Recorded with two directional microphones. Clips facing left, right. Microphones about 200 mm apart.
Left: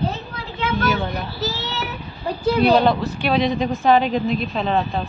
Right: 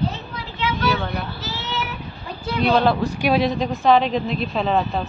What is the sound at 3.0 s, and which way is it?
Speech, 10° right (ahead or behind).